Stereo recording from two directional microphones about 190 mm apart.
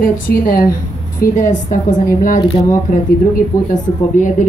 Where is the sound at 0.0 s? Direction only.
50° left (ahead or behind).